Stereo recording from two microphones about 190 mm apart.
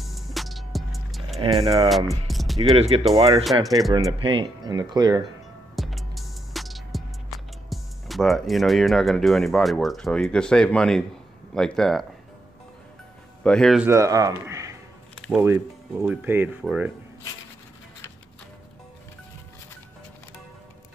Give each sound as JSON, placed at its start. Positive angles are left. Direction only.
{"t": 0.0, "sound": "music", "side_deg": 0}
{"t": 1.4, "sound": "speech", "side_deg": -30}
{"t": 2.2, "sound": "music", "side_deg": 0}
{"t": 2.7, "sound": "speech", "side_deg": -30}
{"t": 3.6, "sound": "speech", "side_deg": 0}
{"t": 3.9, "sound": "speech", "side_deg": -25}
{"t": 5.8, "sound": "music", "side_deg": 0}
{"t": 11.5, "sound": "speech", "side_deg": 5}
{"t": 13.4, "sound": "speech", "side_deg": 5}
{"t": 13.8, "sound": "speech", "side_deg": -15}